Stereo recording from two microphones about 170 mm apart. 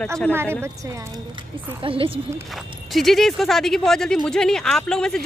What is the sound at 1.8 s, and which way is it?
Speech, 30° right (ahead or behind).